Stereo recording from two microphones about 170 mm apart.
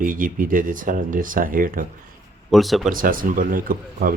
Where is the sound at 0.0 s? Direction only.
55° right (ahead or behind).